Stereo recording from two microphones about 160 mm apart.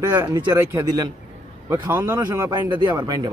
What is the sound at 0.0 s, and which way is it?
Speech, 20° right (ahead or behind).